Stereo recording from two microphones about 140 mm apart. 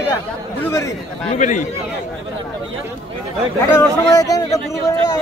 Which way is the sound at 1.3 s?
60° left (ahead or behind).